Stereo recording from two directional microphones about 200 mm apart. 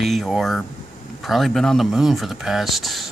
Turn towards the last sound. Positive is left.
turn(degrees=0)  # may be behind; listen again after turning